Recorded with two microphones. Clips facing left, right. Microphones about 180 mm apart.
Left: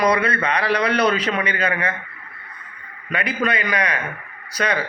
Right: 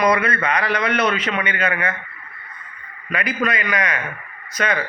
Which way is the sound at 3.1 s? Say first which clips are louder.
Even; 30° left (ahead or behind).